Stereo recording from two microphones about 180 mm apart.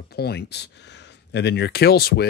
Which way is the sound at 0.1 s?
65° left (ahead or behind).